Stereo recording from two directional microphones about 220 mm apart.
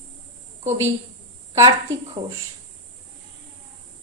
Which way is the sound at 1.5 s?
15° right (ahead or behind).